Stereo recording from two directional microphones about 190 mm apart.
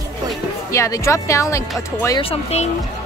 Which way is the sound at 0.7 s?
15° left (ahead or behind).